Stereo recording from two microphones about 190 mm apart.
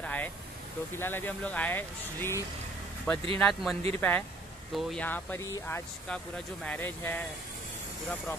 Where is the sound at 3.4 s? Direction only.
Centre (ahead or behind).